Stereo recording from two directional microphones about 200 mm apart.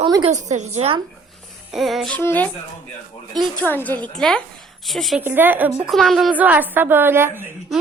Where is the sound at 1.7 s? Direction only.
Centre (ahead or behind).